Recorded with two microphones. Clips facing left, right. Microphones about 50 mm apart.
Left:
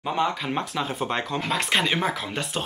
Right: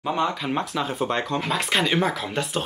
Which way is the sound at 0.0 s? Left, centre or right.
Centre.